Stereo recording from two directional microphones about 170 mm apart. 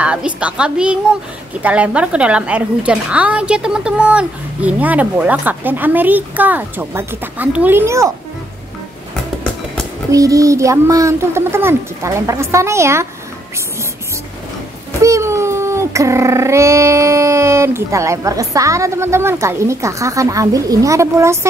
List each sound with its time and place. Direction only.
0.0 s a woman's voice: 5° right (ahead or behind)
10.1 s a woman's voice: 20° right (ahead or behind)
15.0 s a woman's voice: 20° right (ahead or behind)